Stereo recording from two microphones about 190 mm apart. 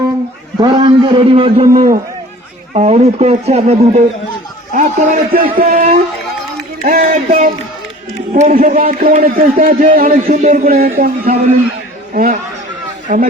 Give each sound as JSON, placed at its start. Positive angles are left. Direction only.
{"t": 0.6, "sound": "a man's voice", "side_deg": -25}
{"t": 1.7, "sound": "speech", "side_deg": -50}
{"t": 2.7, "sound": "speech", "side_deg": -35}
{"t": 5.6, "sound": "speech", "side_deg": -35}
{"t": 6.8, "sound": "speech", "side_deg": -45}